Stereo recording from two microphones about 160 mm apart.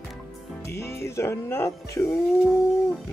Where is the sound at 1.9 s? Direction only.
15° left (ahead or behind).